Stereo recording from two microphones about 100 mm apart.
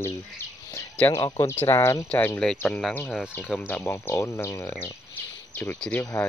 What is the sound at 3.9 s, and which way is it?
Speech, 30° left (ahead or behind).